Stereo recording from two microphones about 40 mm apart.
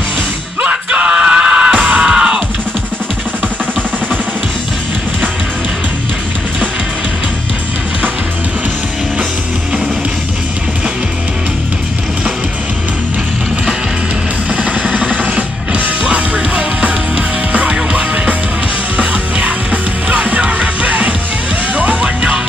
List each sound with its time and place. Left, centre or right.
0.6 s music: right
2.0 s music: centre
14.5 s music: right